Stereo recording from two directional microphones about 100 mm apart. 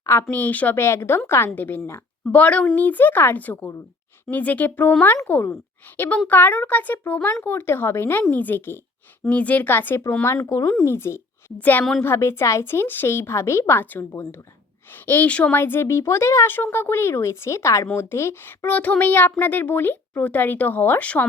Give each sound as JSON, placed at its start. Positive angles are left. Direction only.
{"t": 0.0, "sound": "a child's voice", "side_deg": 25}
{"t": 6.0, "sound": "a child's voice", "side_deg": 15}